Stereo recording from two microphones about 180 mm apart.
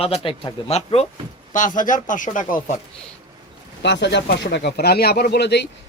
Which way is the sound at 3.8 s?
75° left (ahead or behind).